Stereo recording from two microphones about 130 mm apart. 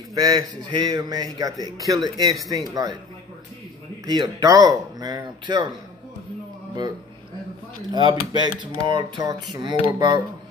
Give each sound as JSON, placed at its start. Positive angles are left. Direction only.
{"t": 0.1, "sound": "speech", "side_deg": -30}
{"t": 4.0, "sound": "speech", "side_deg": -30}
{"t": 7.9, "sound": "speech", "side_deg": -35}